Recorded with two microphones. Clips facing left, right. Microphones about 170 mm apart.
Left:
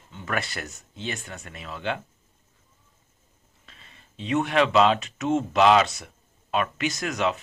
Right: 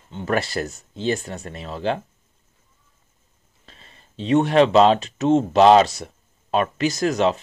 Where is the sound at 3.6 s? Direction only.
35° right (ahead or behind).